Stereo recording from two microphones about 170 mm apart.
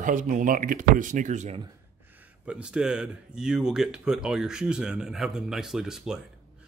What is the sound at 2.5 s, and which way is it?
Speech, 5° right (ahead or behind).